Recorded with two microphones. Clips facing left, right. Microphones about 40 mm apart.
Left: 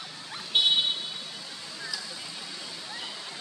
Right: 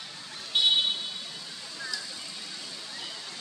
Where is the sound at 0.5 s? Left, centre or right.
Left.